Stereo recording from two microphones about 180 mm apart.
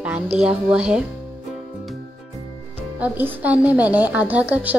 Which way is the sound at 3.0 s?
10° right (ahead or behind).